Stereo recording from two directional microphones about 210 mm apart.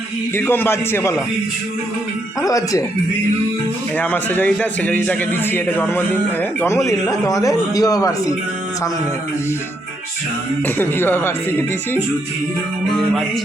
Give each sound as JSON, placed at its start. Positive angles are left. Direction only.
{"t": 0.3, "sound": "a man's voice", "side_deg": 10}
{"t": 2.4, "sound": "a man's voice", "side_deg": 15}
{"t": 3.9, "sound": "a man's voice", "side_deg": 10}
{"t": 10.8, "sound": "a man's voice", "side_deg": 10}